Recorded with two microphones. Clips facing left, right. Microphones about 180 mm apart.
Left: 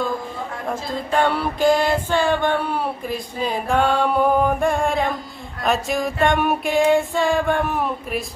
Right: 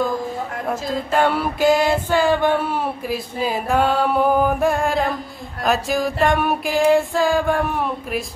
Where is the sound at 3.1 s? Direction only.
5° right (ahead or behind).